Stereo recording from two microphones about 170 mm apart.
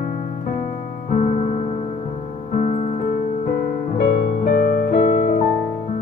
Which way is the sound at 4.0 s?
55° left (ahead or behind).